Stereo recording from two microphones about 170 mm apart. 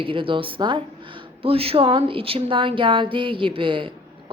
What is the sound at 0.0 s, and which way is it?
A woman's voice, 30° right (ahead or behind).